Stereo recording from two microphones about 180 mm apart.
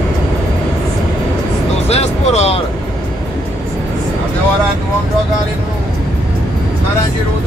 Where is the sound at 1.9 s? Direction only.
35° left (ahead or behind).